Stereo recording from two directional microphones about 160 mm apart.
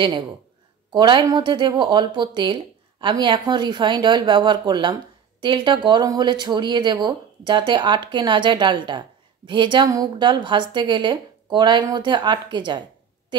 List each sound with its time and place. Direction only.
0.9 s speech: 30° right (ahead or behind)